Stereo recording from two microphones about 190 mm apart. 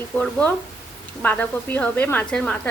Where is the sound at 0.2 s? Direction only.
5° left (ahead or behind).